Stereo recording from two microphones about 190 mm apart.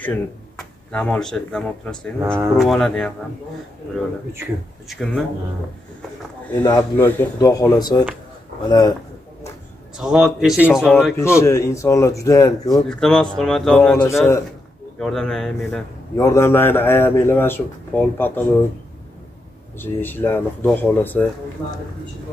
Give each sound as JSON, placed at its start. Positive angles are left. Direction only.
{"t": 0.0, "sound": "speech", "side_deg": 5}
{"t": 4.8, "sound": "speech", "side_deg": 5}
{"t": 6.5, "sound": "a man's voice", "side_deg": 10}
{"t": 9.9, "sound": "speech", "side_deg": 0}
{"t": 11.1, "sound": "a man's voice", "side_deg": 15}
{"t": 12.7, "sound": "speech", "side_deg": 0}
{"t": 15.0, "sound": "speech", "side_deg": 5}
{"t": 16.2, "sound": "a man's voice", "side_deg": 15}
{"t": 19.8, "sound": "a man's voice", "side_deg": 10}